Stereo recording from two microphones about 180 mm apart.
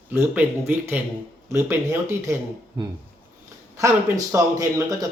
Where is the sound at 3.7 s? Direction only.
20° right (ahead or behind).